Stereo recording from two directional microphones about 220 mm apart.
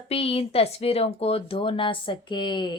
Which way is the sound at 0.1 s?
25° left (ahead or behind).